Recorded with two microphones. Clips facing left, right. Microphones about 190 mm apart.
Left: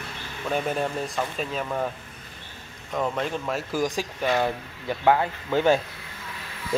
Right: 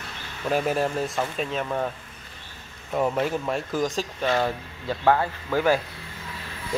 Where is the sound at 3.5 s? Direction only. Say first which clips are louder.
Even; 10° left (ahead or behind).